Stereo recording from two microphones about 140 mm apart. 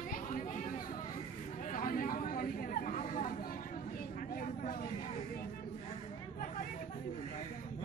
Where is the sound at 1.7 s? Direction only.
80° left.